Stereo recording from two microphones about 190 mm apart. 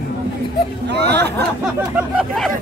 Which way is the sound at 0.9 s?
65° right (ahead or behind).